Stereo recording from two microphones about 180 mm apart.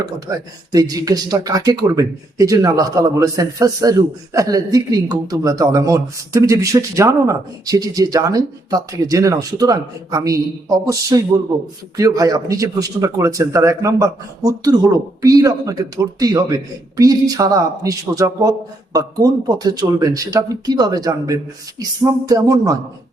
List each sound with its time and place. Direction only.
0.3 s speech: 20° right (ahead or behind)